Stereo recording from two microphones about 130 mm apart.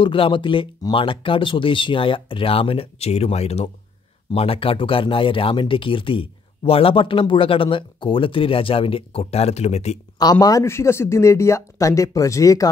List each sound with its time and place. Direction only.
0.0 s speech: 40° left (ahead or behind); by 9.9 s 55° left (ahead or behind)
10.1 s speech: 30° left (ahead or behind)